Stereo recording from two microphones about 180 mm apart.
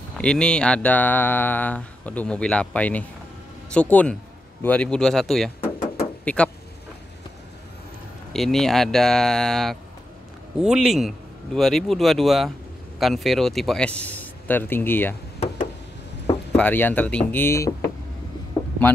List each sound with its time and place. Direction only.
0.2 s speech: 5° left (ahead or behind)
8.3 s speech: centre (ahead or behind)
15.4 s a sound: 45° left (ahead or behind)
16.5 s speech: 10° left (ahead or behind)